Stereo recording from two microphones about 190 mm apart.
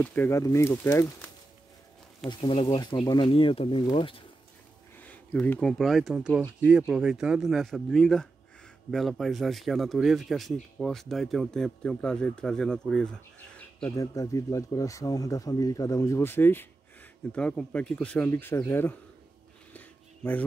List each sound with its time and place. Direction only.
0.0 s speech: 10° left (ahead or behind)
2.2 s speech: 25° left (ahead or behind)
5.0 s speech: 10° left (ahead or behind)
19.7 s a sound: 10° left (ahead or behind)